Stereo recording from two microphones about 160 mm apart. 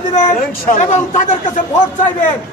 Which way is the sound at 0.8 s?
50° left (ahead or behind).